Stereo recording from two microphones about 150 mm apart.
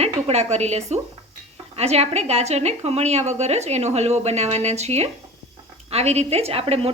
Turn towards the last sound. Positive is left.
turn(degrees=-40)  # may be behind; listen again after turning